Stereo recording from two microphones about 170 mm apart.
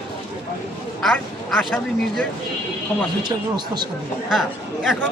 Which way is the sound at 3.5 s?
25° right (ahead or behind).